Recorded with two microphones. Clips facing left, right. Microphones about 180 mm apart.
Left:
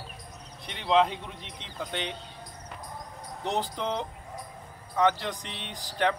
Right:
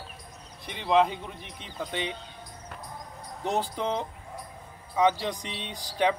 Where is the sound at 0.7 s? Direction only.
10° right (ahead or behind).